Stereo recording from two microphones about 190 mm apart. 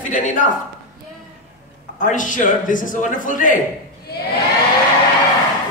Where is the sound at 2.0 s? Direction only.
45° left (ahead or behind).